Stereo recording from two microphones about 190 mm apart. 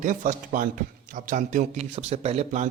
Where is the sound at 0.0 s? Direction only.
45° right (ahead or behind).